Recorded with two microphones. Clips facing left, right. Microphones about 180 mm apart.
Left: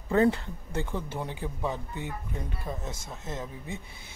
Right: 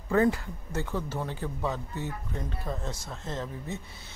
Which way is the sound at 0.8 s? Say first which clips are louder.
Right 1 dB; 20° left (ahead or behind).